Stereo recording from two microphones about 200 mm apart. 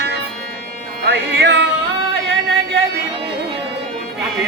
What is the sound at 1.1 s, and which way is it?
Music, 60° right (ahead or behind).